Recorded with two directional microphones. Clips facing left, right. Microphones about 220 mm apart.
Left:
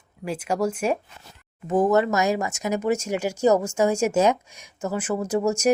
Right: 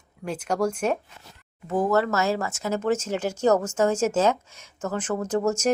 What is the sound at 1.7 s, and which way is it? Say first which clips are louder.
Speech: left 3 dB; 20° left (ahead or behind).